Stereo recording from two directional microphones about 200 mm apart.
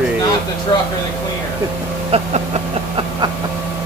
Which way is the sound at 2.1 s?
30° right (ahead or behind).